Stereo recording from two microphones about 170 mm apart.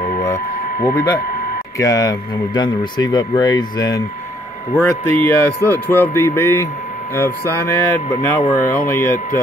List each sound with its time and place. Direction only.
1.8 s speech: 20° left (ahead or behind)
8.5 s speech: 55° left (ahead or behind)
8.8 s speech: 15° left (ahead or behind)